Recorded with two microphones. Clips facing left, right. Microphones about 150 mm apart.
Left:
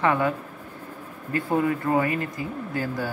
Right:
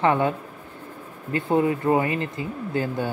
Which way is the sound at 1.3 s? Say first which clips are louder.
Right 2 dB; 25° right (ahead or behind).